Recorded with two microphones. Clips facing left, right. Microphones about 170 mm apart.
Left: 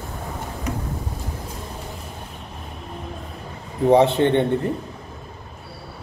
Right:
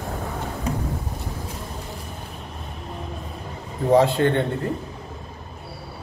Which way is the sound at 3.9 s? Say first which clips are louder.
Left 2 dB; 20° left (ahead or behind).